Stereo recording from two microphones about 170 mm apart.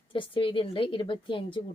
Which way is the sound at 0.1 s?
30° left (ahead or behind).